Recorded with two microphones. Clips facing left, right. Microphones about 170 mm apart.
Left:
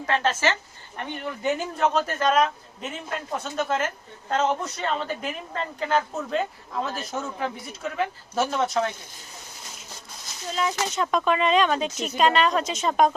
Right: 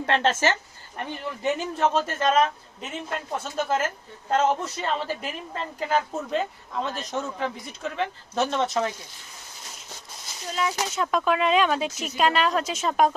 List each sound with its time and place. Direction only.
0.3 s speech: 50° right (ahead or behind)
0.9 s a man's voice: centre (ahead or behind)
10.5 s a man's voice: centre (ahead or behind)